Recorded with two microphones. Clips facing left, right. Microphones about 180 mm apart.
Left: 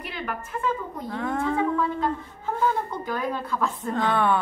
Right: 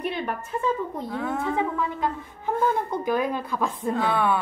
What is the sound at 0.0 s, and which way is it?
A woman's voice, 25° right (ahead or behind).